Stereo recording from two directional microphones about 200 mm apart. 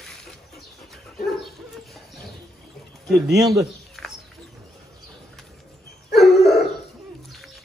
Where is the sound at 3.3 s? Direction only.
15° right (ahead or behind).